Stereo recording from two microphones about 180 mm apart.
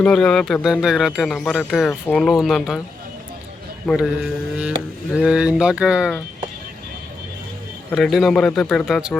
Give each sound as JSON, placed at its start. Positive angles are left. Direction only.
{"t": 0.0, "sound": "speech", "side_deg": 5}
{"t": 3.8, "sound": "speech", "side_deg": 0}
{"t": 7.9, "sound": "speech", "side_deg": 0}